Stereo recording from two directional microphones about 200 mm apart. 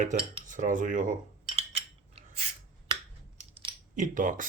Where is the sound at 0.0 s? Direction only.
40° right (ahead or behind).